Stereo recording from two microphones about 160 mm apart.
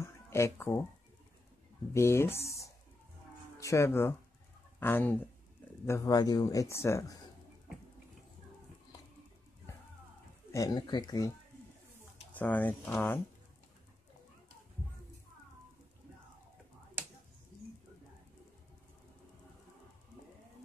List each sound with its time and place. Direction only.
0.0 s music: 15° left (ahead or behind)
2.0 s speech: 15° left (ahead or behind)
10.5 s speech: 25° left (ahead or behind)
12.4 s speech: 10° left (ahead or behind)